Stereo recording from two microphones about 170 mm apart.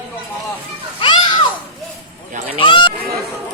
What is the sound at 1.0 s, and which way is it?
Children playing, 25° left (ahead or behind).